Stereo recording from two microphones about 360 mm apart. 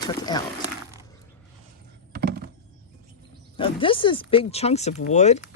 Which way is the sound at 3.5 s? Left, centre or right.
Centre.